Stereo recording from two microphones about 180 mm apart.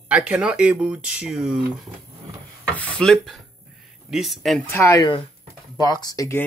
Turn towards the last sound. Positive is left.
turn(degrees=15)  # may be behind; listen again after turning